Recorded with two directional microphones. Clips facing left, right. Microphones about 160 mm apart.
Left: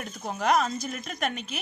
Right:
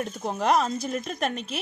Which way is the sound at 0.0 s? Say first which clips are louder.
Right 3 dB; 30° right (ahead or behind).